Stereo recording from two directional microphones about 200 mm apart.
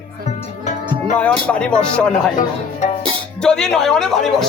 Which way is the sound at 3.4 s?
Centre (ahead or behind).